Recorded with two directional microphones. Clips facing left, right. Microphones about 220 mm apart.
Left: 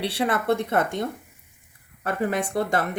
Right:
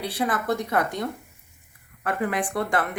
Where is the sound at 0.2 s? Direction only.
25° left (ahead or behind).